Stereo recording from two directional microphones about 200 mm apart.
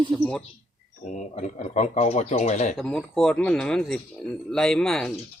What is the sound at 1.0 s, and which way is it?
Speech, 35° left (ahead or behind).